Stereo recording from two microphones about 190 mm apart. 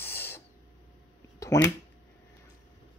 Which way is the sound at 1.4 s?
15° left (ahead or behind).